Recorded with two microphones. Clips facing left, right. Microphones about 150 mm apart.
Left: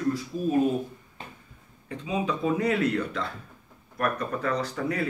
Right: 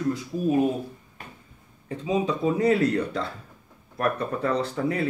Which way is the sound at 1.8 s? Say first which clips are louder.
Right 4 dB; 35° right (ahead or behind).